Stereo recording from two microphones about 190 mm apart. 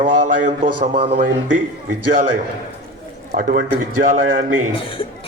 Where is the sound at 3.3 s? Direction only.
45° right (ahead or behind).